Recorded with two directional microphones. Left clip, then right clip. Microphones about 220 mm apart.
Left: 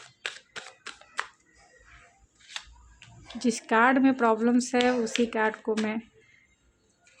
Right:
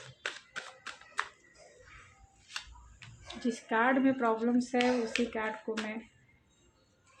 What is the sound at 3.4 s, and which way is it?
Speech, 50° left (ahead or behind).